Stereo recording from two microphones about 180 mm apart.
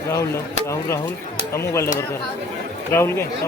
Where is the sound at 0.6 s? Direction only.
15° left (ahead or behind).